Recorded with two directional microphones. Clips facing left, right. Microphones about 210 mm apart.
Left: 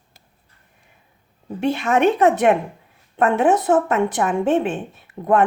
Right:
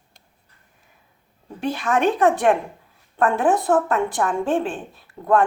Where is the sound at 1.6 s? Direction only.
25° left (ahead or behind).